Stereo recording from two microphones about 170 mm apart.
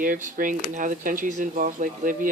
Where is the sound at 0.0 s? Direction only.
50° right (ahead or behind).